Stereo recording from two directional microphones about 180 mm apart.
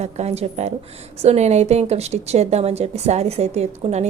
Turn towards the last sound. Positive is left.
turn(degrees=-40)  # may be behind; listen again after turning